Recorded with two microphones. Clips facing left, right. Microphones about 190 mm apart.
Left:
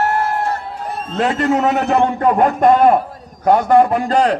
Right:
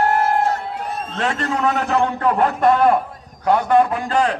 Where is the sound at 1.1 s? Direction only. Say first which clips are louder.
Left 7 dB; 35° left (ahead or behind).